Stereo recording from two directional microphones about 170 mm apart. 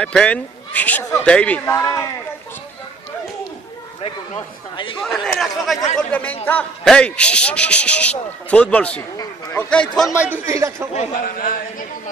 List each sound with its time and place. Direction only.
0.0 s a man's voice: 5° left (ahead or behind)
1.8 s a man's voice: 20° left (ahead or behind)
5.0 s a man's voice: centre (ahead or behind)
9.1 s a man's voice: 15° left (ahead or behind); by 10.9 s 15° right (ahead or behind)
11.1 s speech: 55° left (ahead or behind)